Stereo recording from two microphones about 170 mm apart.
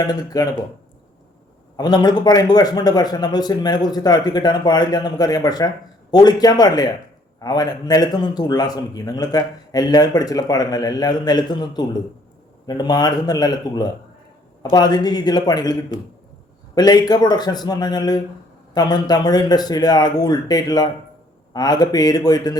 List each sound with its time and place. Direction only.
0.1 s a man's voice: 20° left (ahead or behind)
1.7 s a man's voice: 25° left (ahead or behind)
16.7 s a man's voice: 25° left (ahead or behind)